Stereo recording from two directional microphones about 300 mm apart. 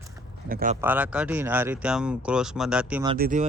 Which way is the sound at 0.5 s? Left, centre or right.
Right.